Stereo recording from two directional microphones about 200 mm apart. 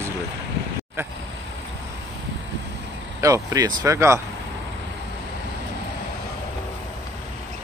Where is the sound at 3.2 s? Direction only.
15° right (ahead or behind).